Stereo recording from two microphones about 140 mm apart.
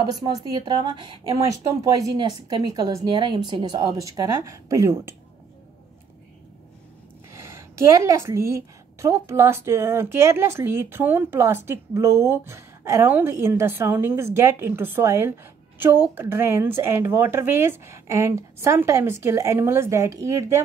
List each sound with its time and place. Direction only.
0.0 s a woman's voice: 25° right (ahead or behind)
7.3 s a woman's voice: 20° right (ahead or behind)